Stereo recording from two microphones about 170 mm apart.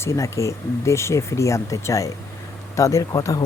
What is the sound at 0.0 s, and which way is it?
Speech, 15° left (ahead or behind).